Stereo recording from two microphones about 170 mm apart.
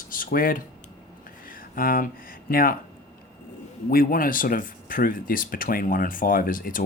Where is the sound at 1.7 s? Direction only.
55° left (ahead or behind).